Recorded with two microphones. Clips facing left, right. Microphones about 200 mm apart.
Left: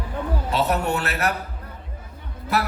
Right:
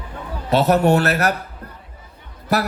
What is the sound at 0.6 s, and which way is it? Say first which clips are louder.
Speech: right 8 dB; 40° right (ahead or behind).